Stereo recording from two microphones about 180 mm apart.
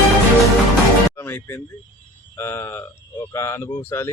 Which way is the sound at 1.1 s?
15° left (ahead or behind).